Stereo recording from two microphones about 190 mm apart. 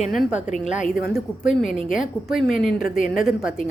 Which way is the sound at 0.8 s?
50° left (ahead or behind).